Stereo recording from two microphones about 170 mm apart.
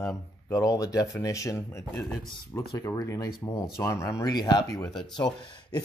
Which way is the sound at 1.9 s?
Centre (ahead or behind).